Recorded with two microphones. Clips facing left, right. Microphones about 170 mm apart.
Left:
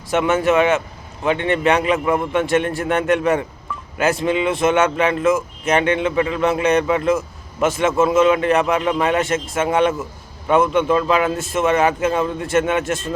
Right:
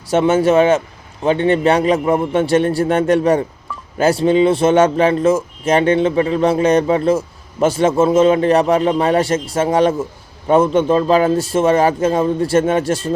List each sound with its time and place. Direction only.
0.1 s speech: 30° right (ahead or behind)